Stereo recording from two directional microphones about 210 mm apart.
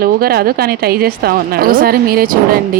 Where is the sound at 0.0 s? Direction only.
45° right (ahead or behind).